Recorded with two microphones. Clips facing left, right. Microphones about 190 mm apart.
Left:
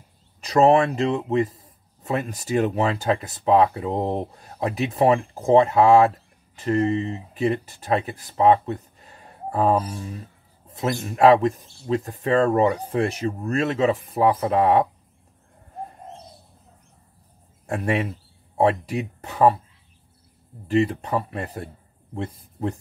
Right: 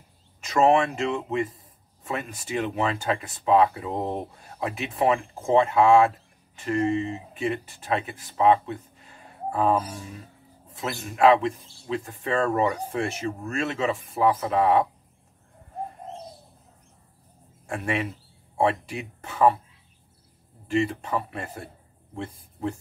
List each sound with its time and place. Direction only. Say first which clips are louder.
0.4 s speech: left 3 dB; 35° left (ahead or behind)
17.6 s speech: left 4 dB; 35° left (ahead or behind)
20.6 s speech: left 4 dB; 35° left (ahead or behind)